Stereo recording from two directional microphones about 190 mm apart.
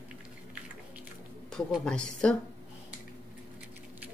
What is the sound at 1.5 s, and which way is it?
Speech, 5° left (ahead or behind).